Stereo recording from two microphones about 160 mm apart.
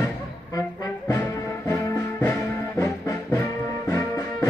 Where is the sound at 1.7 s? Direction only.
15° left (ahead or behind).